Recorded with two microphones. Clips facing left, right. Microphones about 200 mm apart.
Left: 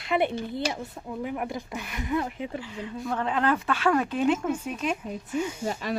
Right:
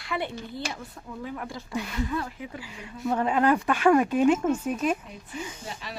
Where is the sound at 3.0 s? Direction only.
10° right (ahead or behind).